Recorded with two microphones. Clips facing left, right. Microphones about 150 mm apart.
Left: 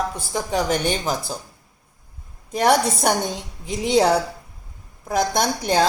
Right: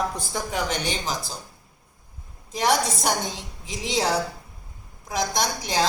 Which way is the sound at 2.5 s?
55° left (ahead or behind).